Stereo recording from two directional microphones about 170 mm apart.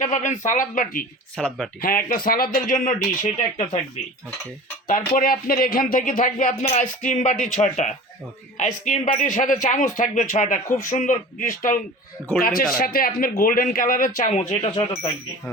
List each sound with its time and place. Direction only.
0.0 s a man's voice: 45° left (ahead or behind)
1.4 s speech: 5° left (ahead or behind)
1.8 s speech: 55° left (ahead or behind)
4.9 s a man's voice: 55° left (ahead or behind)